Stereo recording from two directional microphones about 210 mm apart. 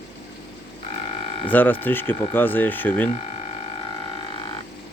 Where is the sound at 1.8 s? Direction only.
10° left (ahead or behind).